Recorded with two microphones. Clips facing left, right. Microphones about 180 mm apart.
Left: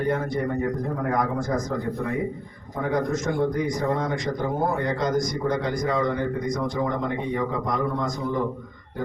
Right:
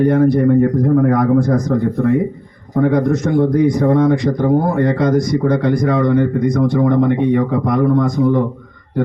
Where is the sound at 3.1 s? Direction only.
65° right (ahead or behind).